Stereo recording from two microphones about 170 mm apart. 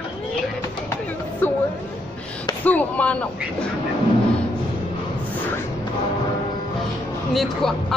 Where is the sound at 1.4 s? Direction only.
10° left (ahead or behind).